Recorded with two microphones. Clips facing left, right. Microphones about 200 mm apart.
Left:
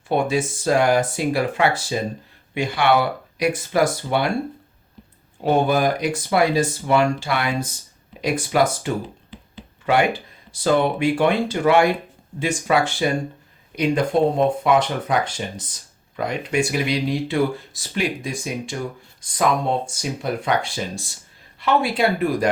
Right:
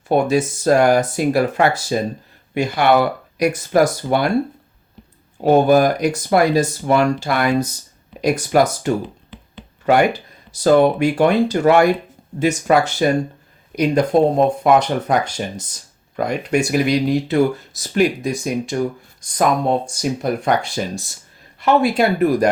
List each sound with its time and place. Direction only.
0.1 s speech: 45° right (ahead or behind)
5.4 s speech: 45° right (ahead or behind)
19.9 s speech: 45° right (ahead or behind)